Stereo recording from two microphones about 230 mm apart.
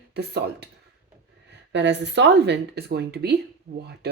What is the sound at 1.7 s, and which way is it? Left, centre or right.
Speech, right.